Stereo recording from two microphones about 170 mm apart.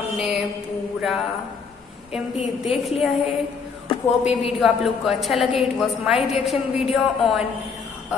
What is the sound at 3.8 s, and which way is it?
Speech, 40° left (ahead or behind).